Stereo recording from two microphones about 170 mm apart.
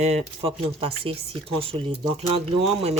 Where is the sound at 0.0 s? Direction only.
35° right (ahead or behind).